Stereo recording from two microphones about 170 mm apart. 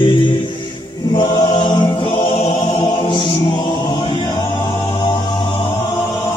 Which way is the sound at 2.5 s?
25° left (ahead or behind).